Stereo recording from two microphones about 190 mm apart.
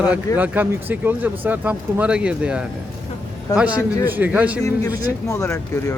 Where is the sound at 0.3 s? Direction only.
10° right (ahead or behind).